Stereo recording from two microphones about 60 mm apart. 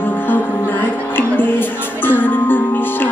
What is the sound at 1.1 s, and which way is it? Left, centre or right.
Music, left.